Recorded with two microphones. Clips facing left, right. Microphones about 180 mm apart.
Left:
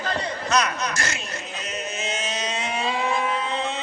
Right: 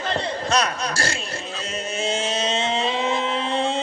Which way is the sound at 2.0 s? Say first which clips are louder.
Right 7 dB; 30° right (ahead or behind).